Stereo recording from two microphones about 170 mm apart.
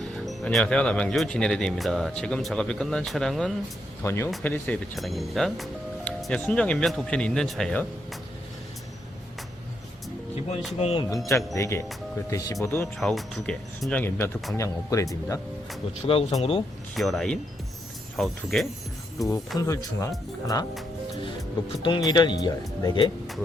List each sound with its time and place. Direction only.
0.0 s speech: centre (ahead or behind)
4.0 s speech: 15° left (ahead or behind)
10.8 s speech: 35° left (ahead or behind)
11.5 s speech: 15° left (ahead or behind)
13.0 s speech: centre (ahead or behind); by 15.0 s 20° left (ahead or behind)
16.0 s speech: 35° left (ahead or behind)
16.9 s speech: centre (ahead or behind)
19.5 s speech: 20° left (ahead or behind)
21.8 s speech: 25° left (ahead or behind)